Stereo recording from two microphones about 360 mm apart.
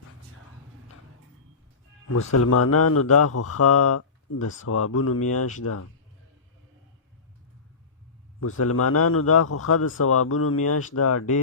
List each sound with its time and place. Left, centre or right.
2.0 s speech: left
8.4 s speech: left